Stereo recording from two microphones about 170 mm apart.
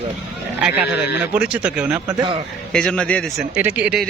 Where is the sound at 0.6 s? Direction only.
5° right (ahead or behind).